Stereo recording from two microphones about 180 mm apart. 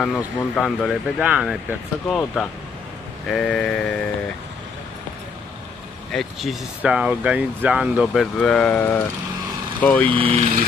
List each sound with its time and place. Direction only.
0.0 s speech: centre (ahead or behind)
6.1 s speech: centre (ahead or behind)
10.1 s speech: 30° right (ahead or behind)